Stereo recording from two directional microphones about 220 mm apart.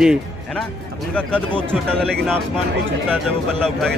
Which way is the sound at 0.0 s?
5° right (ahead or behind).